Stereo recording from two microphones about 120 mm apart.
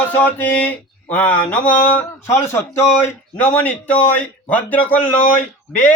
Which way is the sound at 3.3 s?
10° left (ahead or behind).